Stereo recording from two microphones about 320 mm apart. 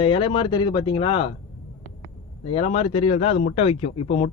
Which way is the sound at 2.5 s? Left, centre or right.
Centre.